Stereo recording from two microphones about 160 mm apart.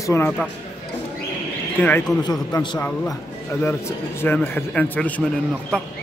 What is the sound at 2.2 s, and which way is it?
Speech, 25° left (ahead or behind).